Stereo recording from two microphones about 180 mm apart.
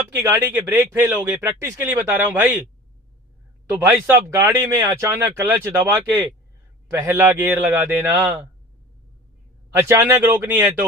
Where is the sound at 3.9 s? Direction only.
15° right (ahead or behind).